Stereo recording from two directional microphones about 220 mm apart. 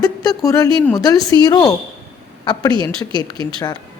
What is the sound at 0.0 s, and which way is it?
A woman's voice, 15° left (ahead or behind).